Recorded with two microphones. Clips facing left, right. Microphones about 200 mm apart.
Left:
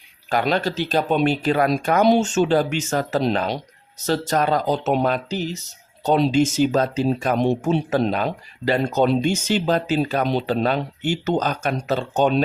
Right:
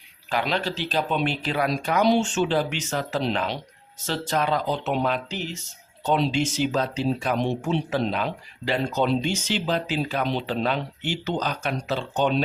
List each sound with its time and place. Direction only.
0.3 s speech: 45° left (ahead or behind)